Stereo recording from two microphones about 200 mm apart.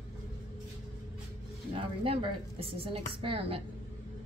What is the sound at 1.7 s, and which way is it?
A woman's voice, 25° right (ahead or behind).